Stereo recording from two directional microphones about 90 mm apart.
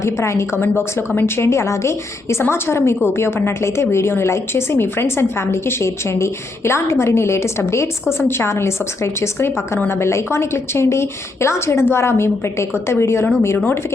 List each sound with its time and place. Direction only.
0.0 s a woman's voice: 35° left (ahead or behind)